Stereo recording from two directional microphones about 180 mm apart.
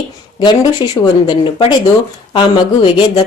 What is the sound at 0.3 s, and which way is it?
Speech, 20° left (ahead or behind).